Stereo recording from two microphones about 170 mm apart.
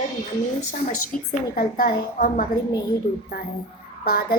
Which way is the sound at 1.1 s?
60° left (ahead or behind).